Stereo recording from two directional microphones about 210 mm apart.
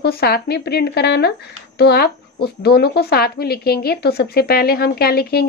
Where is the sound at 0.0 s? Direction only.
50° left (ahead or behind).